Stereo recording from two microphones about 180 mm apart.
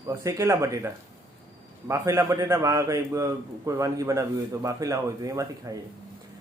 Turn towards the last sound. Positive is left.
turn(degrees=-20)  # may be behind; listen again after turning